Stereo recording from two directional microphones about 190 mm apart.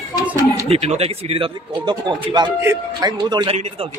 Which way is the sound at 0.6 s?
35° right (ahead or behind).